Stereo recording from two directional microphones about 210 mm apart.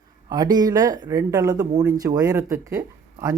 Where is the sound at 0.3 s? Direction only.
20° right (ahead or behind).